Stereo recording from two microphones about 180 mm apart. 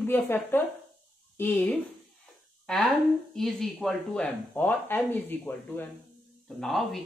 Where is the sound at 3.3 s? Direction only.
Centre (ahead or behind).